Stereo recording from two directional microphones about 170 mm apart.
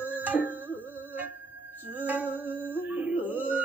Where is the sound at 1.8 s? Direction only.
10° right (ahead or behind).